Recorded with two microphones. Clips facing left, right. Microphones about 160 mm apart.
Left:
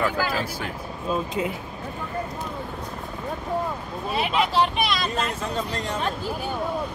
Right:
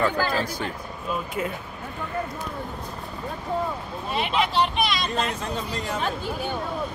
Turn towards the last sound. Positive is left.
turn(degrees=-5)  # may be behind; listen again after turning